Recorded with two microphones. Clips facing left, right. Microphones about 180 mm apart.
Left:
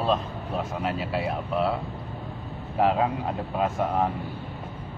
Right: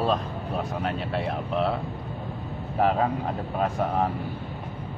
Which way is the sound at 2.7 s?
Centre (ahead or behind).